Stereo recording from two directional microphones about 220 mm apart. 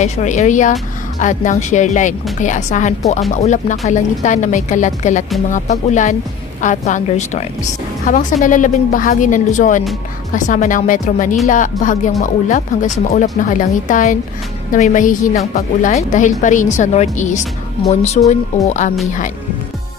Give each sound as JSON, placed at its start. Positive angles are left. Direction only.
{"t": 0.0, "sound": "speech", "side_deg": 35}